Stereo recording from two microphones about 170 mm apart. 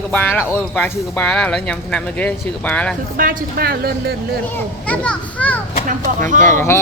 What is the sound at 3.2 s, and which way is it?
Speech, 55° right (ahead or behind).